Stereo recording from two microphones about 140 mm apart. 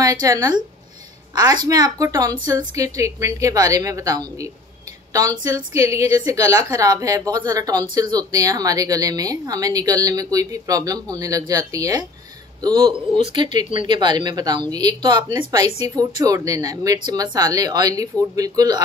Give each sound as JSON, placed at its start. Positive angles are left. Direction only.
{"t": 0.0, "sound": "a woman's voice", "side_deg": -25}